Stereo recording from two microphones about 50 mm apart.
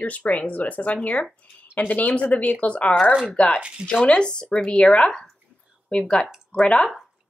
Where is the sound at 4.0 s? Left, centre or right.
Centre.